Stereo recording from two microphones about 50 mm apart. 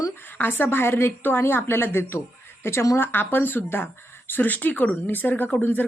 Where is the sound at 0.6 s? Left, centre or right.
Left.